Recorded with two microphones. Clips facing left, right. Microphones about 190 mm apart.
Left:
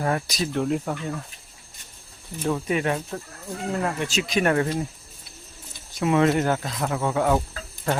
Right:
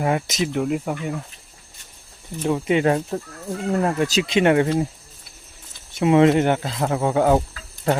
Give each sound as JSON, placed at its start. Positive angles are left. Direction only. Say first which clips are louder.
{"t": 0.0, "sound": "speech", "louder": "right 3 dB", "side_deg": -15}
{"t": 0.5, "sound": "speech", "louder": "even", "side_deg": -5}
{"t": 2.4, "sound": "speech", "louder": "right 4 dB", "side_deg": -20}
{"t": 2.8, "sound": "speech", "louder": "right 6 dB", "side_deg": -35}
{"t": 4.2, "sound": "speech", "louder": "right 4 dB", "side_deg": -25}
{"t": 5.9, "sound": "speech", "louder": "right 5 dB", "side_deg": -25}